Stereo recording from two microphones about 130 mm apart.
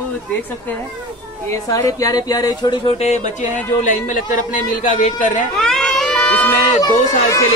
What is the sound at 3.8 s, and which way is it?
Speech, 75° left (ahead or behind).